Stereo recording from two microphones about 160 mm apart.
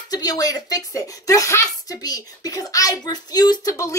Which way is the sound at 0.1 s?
25° left (ahead or behind).